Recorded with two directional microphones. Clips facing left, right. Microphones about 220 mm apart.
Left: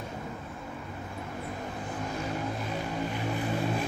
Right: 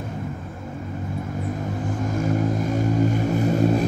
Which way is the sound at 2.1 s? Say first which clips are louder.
Right 12 dB; 45° right (ahead or behind).